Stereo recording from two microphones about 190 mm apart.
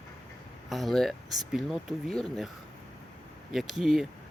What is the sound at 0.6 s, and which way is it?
Speech, centre (ahead or behind).